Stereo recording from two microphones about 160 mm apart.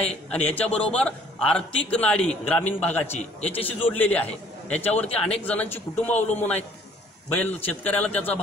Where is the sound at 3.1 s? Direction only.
40° left (ahead or behind).